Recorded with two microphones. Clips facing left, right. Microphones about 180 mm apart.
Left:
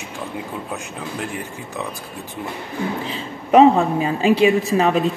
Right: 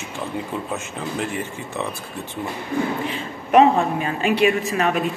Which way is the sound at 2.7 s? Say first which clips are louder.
Right 4 dB; 50° right (ahead or behind).